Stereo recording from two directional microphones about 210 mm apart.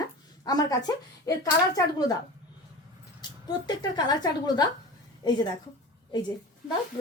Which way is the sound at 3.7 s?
20° left (ahead or behind).